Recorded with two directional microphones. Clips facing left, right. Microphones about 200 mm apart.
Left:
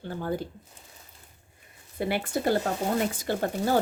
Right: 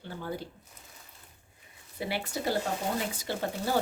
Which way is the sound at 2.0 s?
50° left (ahead or behind).